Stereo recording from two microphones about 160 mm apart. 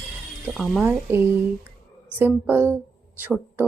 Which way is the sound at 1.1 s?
15° right (ahead or behind).